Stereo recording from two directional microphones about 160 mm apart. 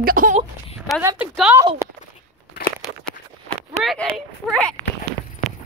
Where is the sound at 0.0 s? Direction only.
60° right (ahead or behind).